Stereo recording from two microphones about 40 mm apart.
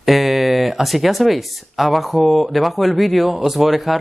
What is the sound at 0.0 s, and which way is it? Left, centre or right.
Speech, centre.